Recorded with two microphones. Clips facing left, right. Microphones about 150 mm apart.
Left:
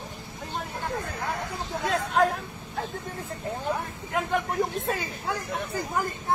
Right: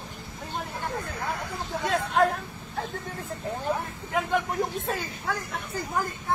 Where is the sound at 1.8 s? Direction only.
Centre (ahead or behind).